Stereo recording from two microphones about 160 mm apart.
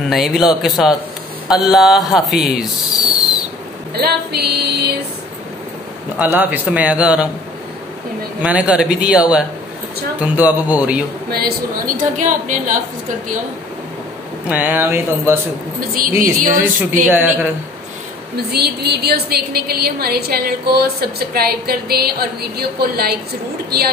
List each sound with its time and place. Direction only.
0.1 s mantra: centre (ahead or behind)
3.9 s a sound: 85° right
6.1 s a man's voice: 10° right (ahead or behind)
8.4 s a man's voice: 10° right (ahead or behind)
11.2 s a woman's voice: 70° right (ahead or behind); by 12.8 s 50° right (ahead or behind)
14.5 s a man's voice: 10° right (ahead or behind)
15.9 s a woman's voice: 60° right (ahead or behind)
17.1 s a man's voice: 10° right (ahead or behind)
18.3 s a woman's voice: 85° right